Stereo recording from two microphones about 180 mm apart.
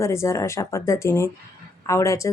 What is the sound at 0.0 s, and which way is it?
Speech, 15° left (ahead or behind).